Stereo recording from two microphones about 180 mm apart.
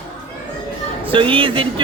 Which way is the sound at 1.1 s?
30° right (ahead or behind).